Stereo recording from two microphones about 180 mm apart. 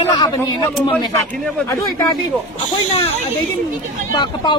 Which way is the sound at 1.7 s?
20° left (ahead or behind).